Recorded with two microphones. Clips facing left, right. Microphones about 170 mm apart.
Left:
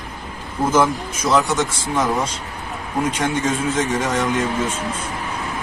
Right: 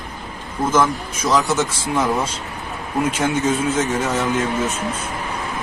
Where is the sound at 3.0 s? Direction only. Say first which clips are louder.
Right 2 dB; 10° right (ahead or behind).